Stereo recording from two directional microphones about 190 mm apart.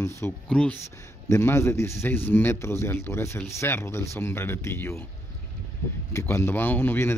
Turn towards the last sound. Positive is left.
turn(degrees=10)  # may be behind; listen again after turning